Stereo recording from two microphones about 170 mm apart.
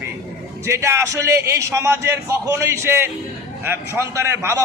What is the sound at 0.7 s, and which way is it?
A man's voice, 15° right (ahead or behind).